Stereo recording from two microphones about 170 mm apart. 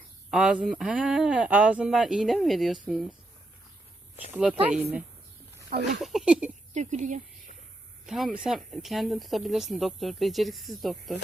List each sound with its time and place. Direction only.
0.3 s speech: 5° right (ahead or behind)
4.6 s speech: 10° right (ahead or behind)
6.7 s speech: 45° right (ahead or behind)
8.0 s speech: centre (ahead or behind)